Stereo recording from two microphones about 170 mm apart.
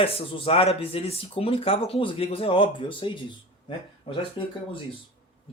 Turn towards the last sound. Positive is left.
turn(degrees=30)  # may be behind; listen again after turning